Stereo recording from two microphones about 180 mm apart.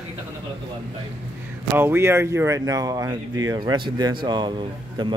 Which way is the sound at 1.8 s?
15° right (ahead or behind).